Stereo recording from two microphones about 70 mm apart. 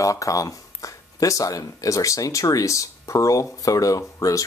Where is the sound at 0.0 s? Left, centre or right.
Left.